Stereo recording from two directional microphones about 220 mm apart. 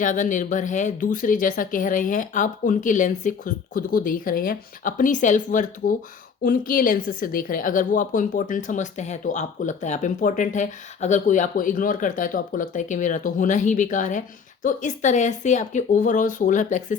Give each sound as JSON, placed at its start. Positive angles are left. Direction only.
{"t": 0.0, "sound": "a woman's voice", "side_deg": 35}